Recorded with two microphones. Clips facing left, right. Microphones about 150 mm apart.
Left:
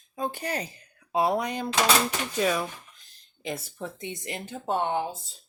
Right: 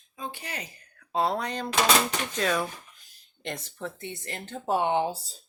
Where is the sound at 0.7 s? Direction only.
15° left (ahead or behind).